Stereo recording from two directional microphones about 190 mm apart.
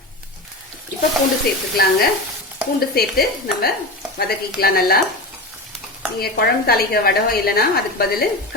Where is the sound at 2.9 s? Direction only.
55° left (ahead or behind).